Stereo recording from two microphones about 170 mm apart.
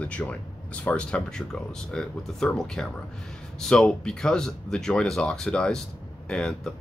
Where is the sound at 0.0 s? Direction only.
10° left (ahead or behind).